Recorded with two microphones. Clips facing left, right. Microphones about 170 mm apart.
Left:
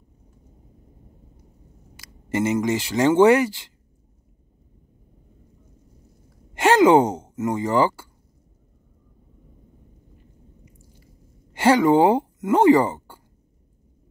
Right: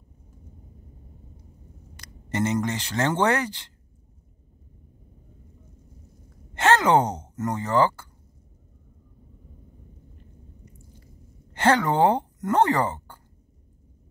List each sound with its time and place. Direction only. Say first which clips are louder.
2.0 s speech: left 3 dB; 10° left (ahead or behind)
6.5 s speech: left 5 dB; 10° left (ahead or behind)
11.5 s speech: left 5 dB; 10° left (ahead or behind)